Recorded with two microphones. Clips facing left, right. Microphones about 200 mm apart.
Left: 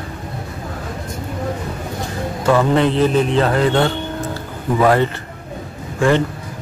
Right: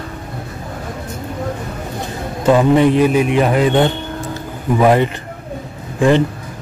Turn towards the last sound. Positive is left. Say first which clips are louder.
# right 2 dB
turn(degrees=-20)  # may be behind; listen again after turning